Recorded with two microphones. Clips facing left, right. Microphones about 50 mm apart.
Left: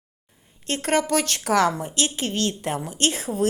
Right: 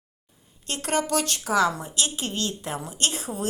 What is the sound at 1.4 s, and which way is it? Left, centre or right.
Speech, left.